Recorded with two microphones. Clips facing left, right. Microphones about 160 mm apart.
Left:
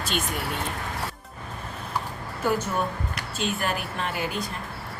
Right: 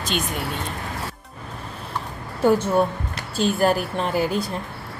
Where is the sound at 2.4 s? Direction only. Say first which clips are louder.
Right 8 dB; 30° right (ahead or behind).